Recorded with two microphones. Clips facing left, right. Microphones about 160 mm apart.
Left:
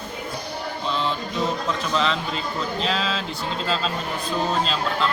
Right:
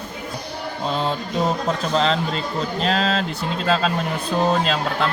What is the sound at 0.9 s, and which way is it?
A man's voice, 45° right (ahead or behind).